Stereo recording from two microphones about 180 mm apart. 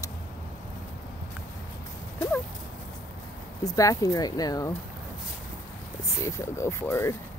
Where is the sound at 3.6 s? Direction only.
20° left (ahead or behind).